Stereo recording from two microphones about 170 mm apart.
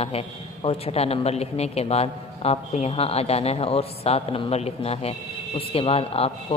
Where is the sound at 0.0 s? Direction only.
35° left (ahead or behind).